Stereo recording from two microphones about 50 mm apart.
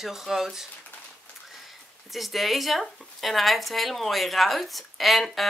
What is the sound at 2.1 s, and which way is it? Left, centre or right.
Speech, centre.